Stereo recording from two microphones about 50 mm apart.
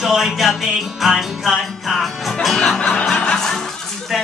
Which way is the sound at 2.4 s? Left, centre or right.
Centre.